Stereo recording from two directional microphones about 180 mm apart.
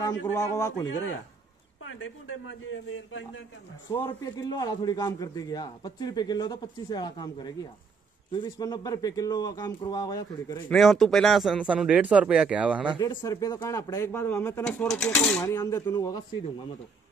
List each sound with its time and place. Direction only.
0.2 s speech: 20° left (ahead or behind)
1.9 s speech: 90° left
4.0 s a man's voice: 15° left (ahead or behind)
10.7 s speech: centre (ahead or behind)
13.0 s speech: 20° left (ahead or behind)
15.4 s a man's voice: 20° left (ahead or behind)